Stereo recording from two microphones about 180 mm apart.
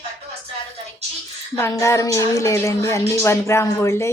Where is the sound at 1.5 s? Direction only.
15° left (ahead or behind).